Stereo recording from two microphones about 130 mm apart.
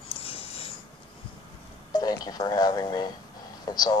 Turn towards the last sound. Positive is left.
turn(degrees=30)  # may be behind; listen again after turning